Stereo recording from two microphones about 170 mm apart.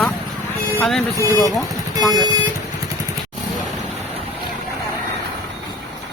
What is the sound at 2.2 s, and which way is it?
Speech, 20° right (ahead or behind).